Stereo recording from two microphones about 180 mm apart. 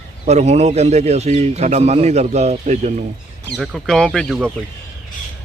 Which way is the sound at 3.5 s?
Centre (ahead or behind).